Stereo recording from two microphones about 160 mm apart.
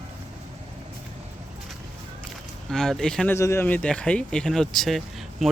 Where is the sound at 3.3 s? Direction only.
15° left (ahead or behind).